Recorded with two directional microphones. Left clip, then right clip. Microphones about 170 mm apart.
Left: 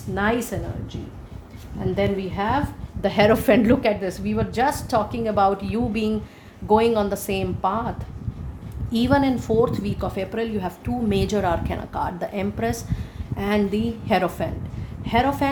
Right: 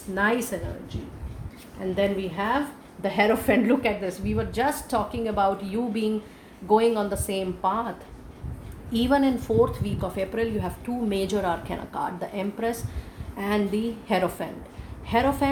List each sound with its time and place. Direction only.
0.1 s a woman's voice: 45° left (ahead or behind)
2.0 s a woman's voice: 45° left (ahead or behind)
8.9 s a woman's voice: 45° left (ahead or behind)